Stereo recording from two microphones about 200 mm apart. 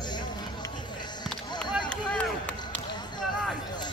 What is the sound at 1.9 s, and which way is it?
Run, 5° left (ahead or behind).